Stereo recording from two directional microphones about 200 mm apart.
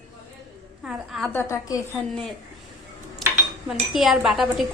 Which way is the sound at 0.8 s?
Centre (ahead or behind).